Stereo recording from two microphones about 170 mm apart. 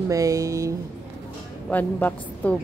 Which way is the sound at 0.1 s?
20° right (ahead or behind).